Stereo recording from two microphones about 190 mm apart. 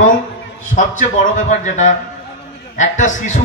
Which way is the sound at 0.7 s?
40° left (ahead or behind).